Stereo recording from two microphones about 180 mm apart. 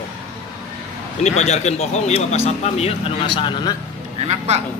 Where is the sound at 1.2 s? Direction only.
40° left (ahead or behind).